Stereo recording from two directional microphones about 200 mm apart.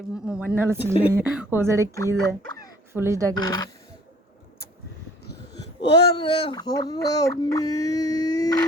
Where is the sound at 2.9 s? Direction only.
15° right (ahead or behind).